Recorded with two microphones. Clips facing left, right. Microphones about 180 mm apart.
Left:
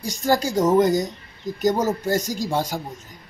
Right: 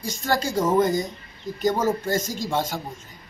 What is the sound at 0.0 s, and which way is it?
Speech, 40° left (ahead or behind).